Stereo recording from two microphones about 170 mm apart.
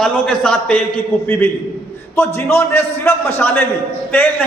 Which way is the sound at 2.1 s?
15° left (ahead or behind).